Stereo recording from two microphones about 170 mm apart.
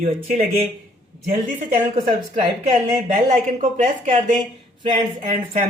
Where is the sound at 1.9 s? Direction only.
45° right (ahead or behind).